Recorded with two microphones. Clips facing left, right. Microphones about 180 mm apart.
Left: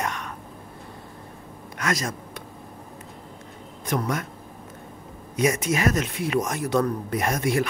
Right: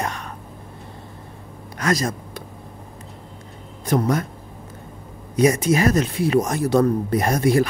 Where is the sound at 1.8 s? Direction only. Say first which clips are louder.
Right 5 dB; 35° right (ahead or behind).